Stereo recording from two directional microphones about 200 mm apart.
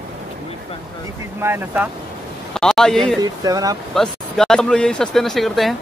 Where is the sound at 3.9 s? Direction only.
Centre (ahead or behind).